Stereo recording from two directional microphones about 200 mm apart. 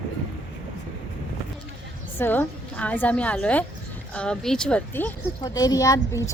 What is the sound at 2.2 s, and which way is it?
A woman's voice, 10° left (ahead or behind).